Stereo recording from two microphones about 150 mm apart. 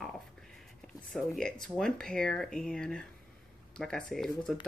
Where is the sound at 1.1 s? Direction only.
5° left (ahead or behind).